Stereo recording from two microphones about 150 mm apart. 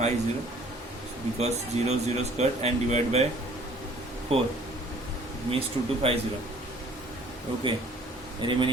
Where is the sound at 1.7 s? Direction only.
50° right (ahead or behind).